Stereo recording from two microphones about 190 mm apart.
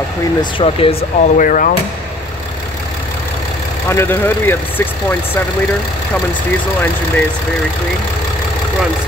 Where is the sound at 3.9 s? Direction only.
10° left (ahead or behind).